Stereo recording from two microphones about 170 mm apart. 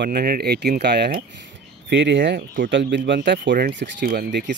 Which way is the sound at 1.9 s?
90° right.